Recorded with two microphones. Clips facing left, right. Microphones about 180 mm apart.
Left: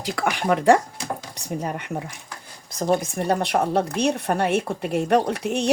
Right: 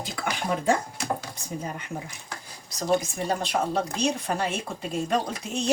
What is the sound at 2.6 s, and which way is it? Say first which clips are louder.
Speech: left 3 dB; 55° left (ahead or behind).